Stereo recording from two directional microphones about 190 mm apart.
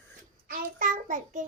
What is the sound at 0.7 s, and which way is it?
Speech, 45° right (ahead or behind).